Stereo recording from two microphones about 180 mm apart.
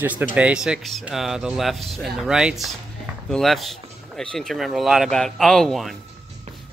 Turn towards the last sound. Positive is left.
turn(degrees=0)  # may be behind; listen again after turning